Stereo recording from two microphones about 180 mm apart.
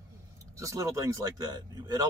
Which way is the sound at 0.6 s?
20° right (ahead or behind).